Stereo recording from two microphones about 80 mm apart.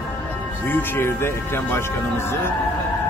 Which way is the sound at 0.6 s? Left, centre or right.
Left.